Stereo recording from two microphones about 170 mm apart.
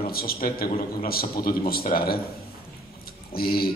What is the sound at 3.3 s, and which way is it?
Speech, 60° left (ahead or behind).